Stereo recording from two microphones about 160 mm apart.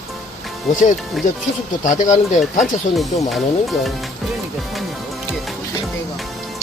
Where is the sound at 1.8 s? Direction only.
50° left (ahead or behind).